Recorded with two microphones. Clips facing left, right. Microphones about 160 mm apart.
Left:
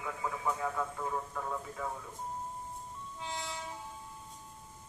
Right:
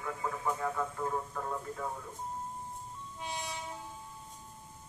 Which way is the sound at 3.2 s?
15° right (ahead or behind).